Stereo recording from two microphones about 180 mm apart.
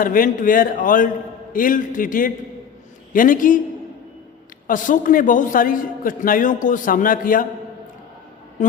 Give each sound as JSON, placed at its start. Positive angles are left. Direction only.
{"t": 0.0, "sound": "a man's voice", "side_deg": 50}
{"t": 4.6, "sound": "a man's voice", "side_deg": 45}